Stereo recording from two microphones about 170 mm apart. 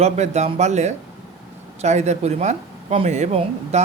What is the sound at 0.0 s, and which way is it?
Speech, 40° right (ahead or behind).